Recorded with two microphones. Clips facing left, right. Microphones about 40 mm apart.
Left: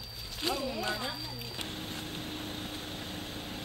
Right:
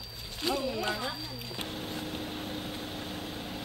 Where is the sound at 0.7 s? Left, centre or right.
Centre.